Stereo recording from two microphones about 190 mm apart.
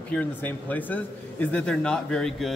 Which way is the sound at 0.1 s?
10° left (ahead or behind).